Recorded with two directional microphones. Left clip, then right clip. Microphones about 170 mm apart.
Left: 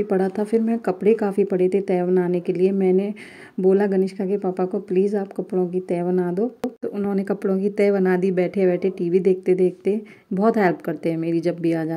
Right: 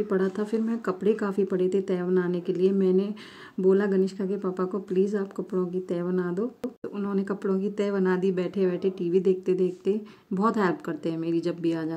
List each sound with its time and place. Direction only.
0.1 s speech: 25° left (ahead or behind)